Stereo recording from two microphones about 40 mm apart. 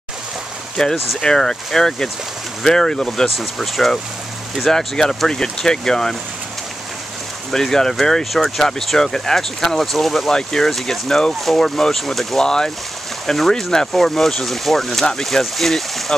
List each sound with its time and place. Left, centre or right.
0.8 s speech: centre
3.3 s speech: centre
4.6 s speech: centre
7.5 s speech: centre
12.4 s speech: centre